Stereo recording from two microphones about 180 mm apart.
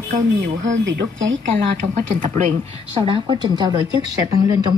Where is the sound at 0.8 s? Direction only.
75° right (ahead or behind).